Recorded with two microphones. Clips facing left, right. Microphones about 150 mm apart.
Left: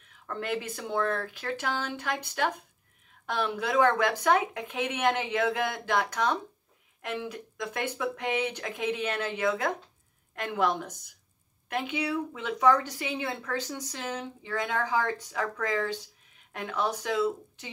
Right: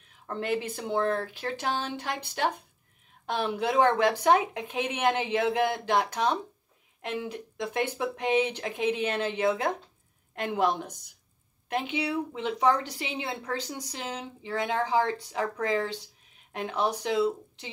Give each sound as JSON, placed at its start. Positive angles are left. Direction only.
{"t": 0.1, "sound": "a woman's voice", "side_deg": -20}